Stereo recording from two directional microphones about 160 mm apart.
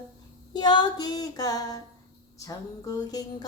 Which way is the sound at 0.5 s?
25° left (ahead or behind).